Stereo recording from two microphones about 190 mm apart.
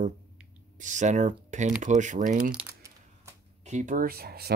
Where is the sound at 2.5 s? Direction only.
10° right (ahead or behind).